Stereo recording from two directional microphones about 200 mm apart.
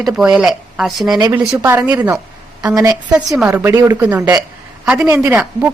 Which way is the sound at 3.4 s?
5° right (ahead or behind).